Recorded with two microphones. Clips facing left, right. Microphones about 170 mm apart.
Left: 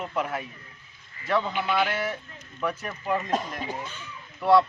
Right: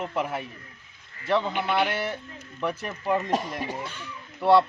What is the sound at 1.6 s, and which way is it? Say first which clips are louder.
Speech: right 1 dB; centre (ahead or behind).